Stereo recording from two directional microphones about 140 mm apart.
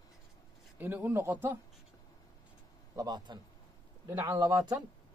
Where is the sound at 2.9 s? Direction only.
30° right (ahead or behind).